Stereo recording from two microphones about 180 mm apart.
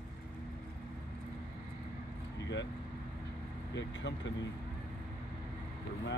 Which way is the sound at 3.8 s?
80° left.